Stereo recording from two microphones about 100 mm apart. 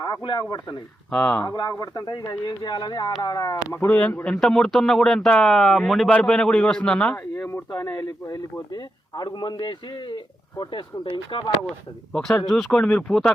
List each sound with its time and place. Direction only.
0.0 s a man's voice: 50° left (ahead or behind)
1.1 s a man's voice: 15° left (ahead or behind)
1.5 s a man's voice: 45° left (ahead or behind)
3.8 s a man's voice: 15° left (ahead or behind)
7.7 s a man's voice: 40° left (ahead or behind); by 11.5 s 60° left (ahead or behind)
12.1 s speech: 5° left (ahead or behind)